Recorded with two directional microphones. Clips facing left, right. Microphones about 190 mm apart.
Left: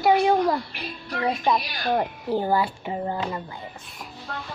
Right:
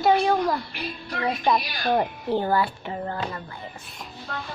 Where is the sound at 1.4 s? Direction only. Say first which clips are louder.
Right 1 dB; 5° left (ahead or behind).